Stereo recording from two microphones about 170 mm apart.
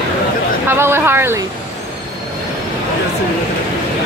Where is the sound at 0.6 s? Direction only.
15° right (ahead or behind).